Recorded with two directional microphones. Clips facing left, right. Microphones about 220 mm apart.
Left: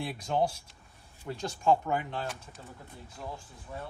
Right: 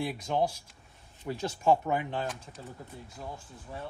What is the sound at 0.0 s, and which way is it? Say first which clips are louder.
Speech: right 1 dB; centre (ahead or behind).